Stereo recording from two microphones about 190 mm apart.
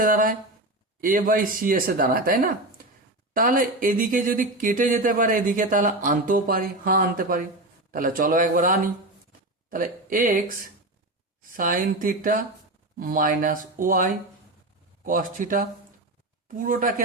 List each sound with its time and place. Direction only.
0.0 s speech: 45° right (ahead or behind)